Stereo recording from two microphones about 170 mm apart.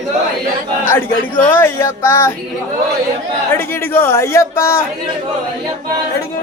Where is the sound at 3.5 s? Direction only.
15° left (ahead or behind).